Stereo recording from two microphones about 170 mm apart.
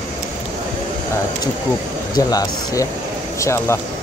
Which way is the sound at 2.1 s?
20° left (ahead or behind).